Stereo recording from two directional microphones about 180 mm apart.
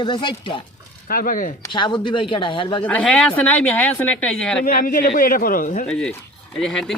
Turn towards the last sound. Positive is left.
turn(degrees=5)  # may be behind; listen again after turning